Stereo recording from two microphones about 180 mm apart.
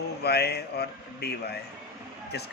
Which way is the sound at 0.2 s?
65° left (ahead or behind).